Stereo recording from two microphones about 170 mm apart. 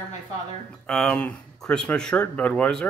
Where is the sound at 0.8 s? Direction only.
5° left (ahead or behind).